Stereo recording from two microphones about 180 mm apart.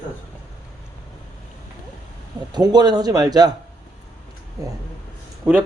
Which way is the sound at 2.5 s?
20° right (ahead or behind).